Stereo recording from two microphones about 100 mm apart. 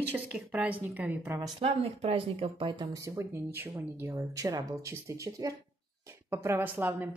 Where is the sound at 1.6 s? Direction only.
85° right; by 2.8 s 60° right (ahead or behind).